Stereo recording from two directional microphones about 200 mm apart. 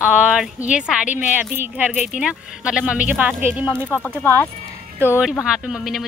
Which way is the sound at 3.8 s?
10° left (ahead or behind).